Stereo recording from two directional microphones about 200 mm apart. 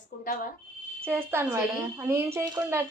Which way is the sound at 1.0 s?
10° right (ahead or behind).